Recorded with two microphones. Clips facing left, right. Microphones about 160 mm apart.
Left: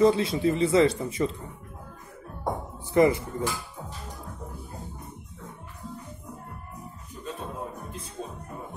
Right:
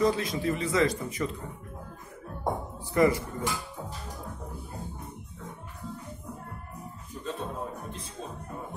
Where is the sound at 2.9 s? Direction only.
25° left (ahead or behind).